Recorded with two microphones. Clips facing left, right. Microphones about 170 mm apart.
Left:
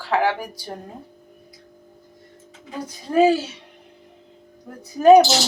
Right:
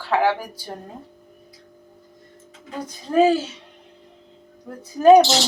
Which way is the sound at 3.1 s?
10° left (ahead or behind).